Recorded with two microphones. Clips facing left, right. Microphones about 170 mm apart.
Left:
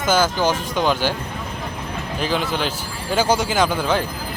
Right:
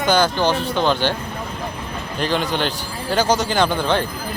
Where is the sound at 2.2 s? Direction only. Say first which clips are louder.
Right 2 dB; 5° left (ahead or behind).